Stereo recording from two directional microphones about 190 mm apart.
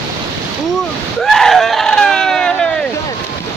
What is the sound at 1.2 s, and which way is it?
Screaming, centre (ahead or behind).